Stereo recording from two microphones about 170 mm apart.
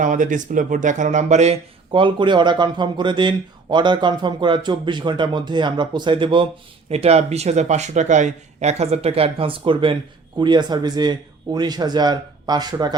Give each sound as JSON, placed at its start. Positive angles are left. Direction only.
{"t": 0.0, "sound": "speech", "side_deg": -50}